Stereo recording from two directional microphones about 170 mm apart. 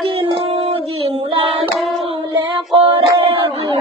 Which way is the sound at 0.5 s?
35° right (ahead or behind).